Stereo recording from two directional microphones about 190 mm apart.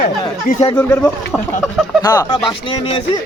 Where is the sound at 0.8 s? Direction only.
10° left (ahead or behind).